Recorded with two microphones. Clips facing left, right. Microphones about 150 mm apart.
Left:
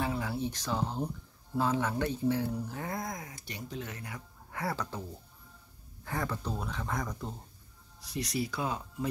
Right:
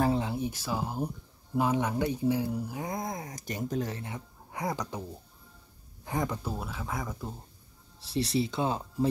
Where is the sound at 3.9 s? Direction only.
25° right (ahead or behind).